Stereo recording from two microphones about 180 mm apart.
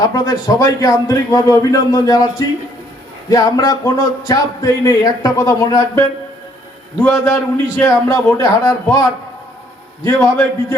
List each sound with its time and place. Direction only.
0.0 s a man's voice: 20° left (ahead or behind)